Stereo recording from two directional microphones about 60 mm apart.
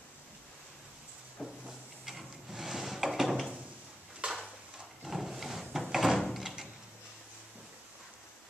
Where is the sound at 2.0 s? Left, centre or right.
Centre.